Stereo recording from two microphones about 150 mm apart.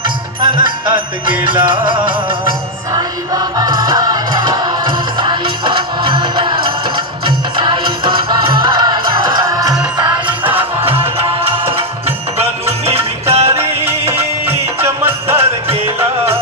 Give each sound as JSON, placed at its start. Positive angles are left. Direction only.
{"t": 0.0, "sound": "music", "side_deg": -30}
{"t": 2.9, "sound": "music", "side_deg": -25}
{"t": 10.8, "sound": "music", "side_deg": -40}
{"t": 13.6, "sound": "music", "side_deg": -15}